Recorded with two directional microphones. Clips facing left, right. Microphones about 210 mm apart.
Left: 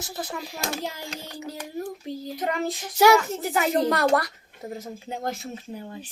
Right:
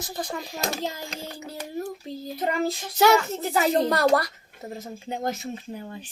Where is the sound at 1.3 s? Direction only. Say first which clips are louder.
Even; 10° right (ahead or behind).